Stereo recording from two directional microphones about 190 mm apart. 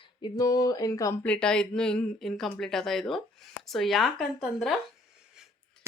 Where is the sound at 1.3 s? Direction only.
5° left (ahead or behind).